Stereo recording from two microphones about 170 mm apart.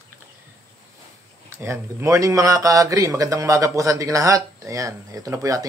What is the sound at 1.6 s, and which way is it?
Speech, 15° right (ahead or behind).